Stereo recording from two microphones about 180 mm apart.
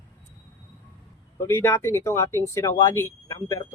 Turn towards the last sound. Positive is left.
turn(degrees=15)  # may be behind; listen again after turning